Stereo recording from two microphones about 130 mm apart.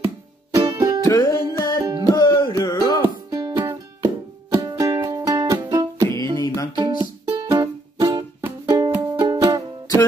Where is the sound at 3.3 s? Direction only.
25° right (ahead or behind).